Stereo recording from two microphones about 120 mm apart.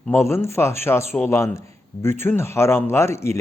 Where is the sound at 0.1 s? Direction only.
20° left (ahead or behind).